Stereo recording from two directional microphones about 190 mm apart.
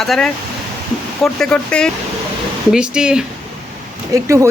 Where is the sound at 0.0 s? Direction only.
Centre (ahead or behind).